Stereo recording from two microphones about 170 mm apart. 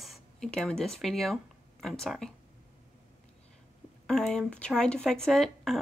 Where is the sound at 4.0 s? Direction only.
5° left (ahead or behind).